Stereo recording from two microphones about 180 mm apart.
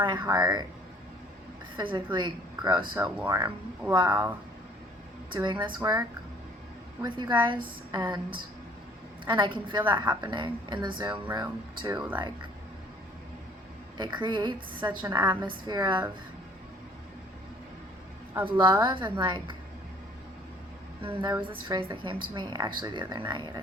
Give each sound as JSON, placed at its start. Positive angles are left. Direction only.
{"t": 0.0, "sound": "a woman's voice", "side_deg": -25}
{"t": 1.7, "sound": "a woman's voice", "side_deg": -25}
{"t": 2.9, "sound": "speech", "side_deg": -10}
{"t": 3.2, "sound": "a woman's voice", "side_deg": -25}
{"t": 5.3, "sound": "a woman's voice", "side_deg": -25}
{"t": 9.2, "sound": "a woman's voice", "side_deg": -25}
{"t": 11.3, "sound": "a woman's voice", "side_deg": -15}
{"t": 14.0, "sound": "a woman's voice", "side_deg": -25}
{"t": 18.4, "sound": "a woman's voice", "side_deg": -25}
{"t": 21.0, "sound": "a woman's voice", "side_deg": -25}